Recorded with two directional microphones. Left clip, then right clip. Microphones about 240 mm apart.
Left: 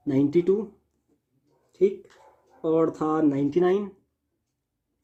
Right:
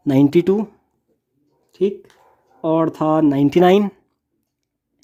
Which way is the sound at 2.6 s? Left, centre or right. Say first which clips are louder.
Right 6 dB; right.